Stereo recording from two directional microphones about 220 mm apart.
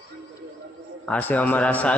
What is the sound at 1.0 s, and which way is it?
Speech, 5° left (ahead or behind).